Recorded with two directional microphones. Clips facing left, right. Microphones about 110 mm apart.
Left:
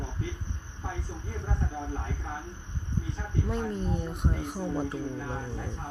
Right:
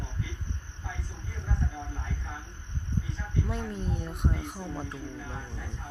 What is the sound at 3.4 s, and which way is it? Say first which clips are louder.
Speech: left 3 dB; centre (ahead or behind).